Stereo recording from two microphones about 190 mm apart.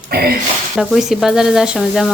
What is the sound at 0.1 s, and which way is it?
Speech, 55° right (ahead or behind).